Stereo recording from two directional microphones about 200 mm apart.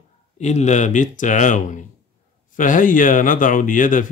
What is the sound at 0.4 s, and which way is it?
Speech, 35° left (ahead or behind).